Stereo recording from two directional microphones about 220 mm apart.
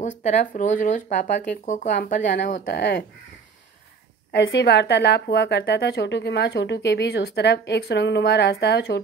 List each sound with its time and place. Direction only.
0.2 s speech: 35° left (ahead or behind)
4.3 s speech: 55° left (ahead or behind)